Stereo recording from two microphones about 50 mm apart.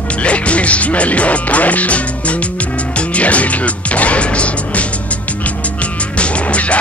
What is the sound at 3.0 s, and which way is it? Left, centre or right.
Music, left.